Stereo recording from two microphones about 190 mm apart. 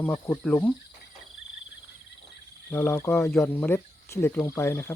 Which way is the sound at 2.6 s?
15° left (ahead or behind).